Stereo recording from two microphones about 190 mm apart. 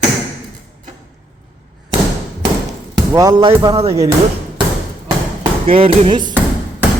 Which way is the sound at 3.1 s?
20° right (ahead or behind).